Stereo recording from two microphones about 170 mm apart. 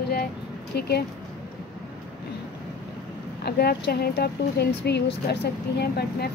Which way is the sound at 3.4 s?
70° left (ahead or behind).